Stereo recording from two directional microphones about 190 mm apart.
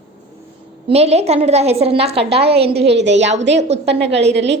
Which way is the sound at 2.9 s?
65° right (ahead or behind).